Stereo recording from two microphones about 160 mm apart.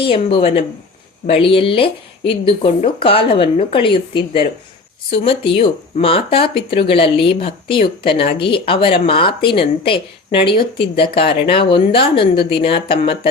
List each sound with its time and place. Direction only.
0.0 s speech: 35° left (ahead or behind)